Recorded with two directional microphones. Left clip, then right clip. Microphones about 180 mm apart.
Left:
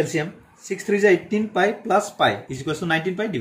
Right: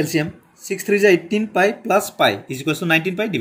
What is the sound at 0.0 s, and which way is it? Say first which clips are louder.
Speech: right 2 dB; 45° right (ahead or behind).